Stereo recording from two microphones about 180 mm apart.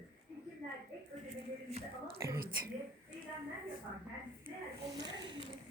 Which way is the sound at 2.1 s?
15° right (ahead or behind).